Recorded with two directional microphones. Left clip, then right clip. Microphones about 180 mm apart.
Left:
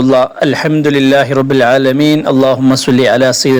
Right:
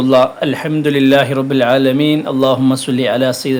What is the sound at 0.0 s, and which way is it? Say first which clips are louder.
A man's voice: left 2 dB; 35° left (ahead or behind).